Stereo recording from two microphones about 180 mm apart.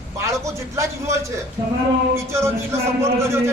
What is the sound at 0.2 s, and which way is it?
A woman's voice, 15° right (ahead or behind).